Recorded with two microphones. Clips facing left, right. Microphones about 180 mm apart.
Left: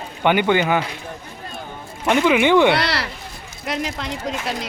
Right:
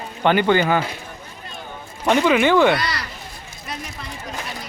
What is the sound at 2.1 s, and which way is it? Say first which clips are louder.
Speech: even; centre (ahead or behind).